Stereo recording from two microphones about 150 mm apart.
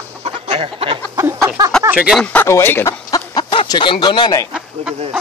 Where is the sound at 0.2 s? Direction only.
40° right (ahead or behind).